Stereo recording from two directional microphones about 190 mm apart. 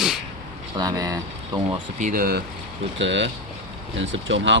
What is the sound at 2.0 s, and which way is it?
Speech, 45° right (ahead or behind).